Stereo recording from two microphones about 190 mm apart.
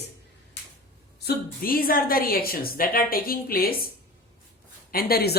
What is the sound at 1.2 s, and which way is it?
A woman's voice, 55° left (ahead or behind).